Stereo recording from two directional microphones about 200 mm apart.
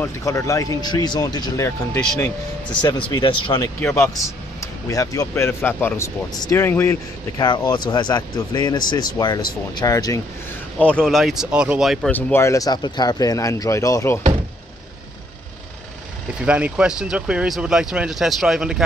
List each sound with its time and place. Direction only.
0.0 s speech: 15° left (ahead or behind)
10.8 s speech: 5° left (ahead or behind)
12.1 s speech: 10° left (ahead or behind)
16.3 s speech: 5° right (ahead or behind)